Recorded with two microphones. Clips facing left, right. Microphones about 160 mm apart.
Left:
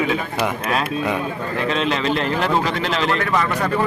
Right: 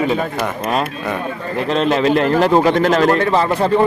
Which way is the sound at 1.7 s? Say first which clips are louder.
Right 8 dB; 45° right (ahead or behind).